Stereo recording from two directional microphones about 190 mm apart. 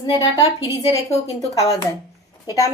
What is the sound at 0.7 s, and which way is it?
A woman's voice, 15° left (ahead or behind).